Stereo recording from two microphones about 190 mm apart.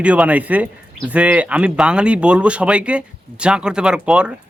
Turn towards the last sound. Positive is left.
turn(degrees=-5)  # may be behind; listen again after turning